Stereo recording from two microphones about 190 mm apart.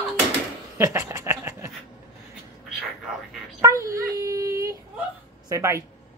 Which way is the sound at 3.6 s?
15° right (ahead or behind).